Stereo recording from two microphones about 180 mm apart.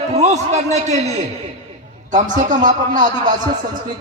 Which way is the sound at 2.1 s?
45° right (ahead or behind).